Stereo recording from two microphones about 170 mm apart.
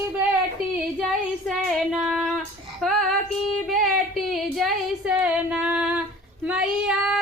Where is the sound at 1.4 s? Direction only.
Centre (ahead or behind).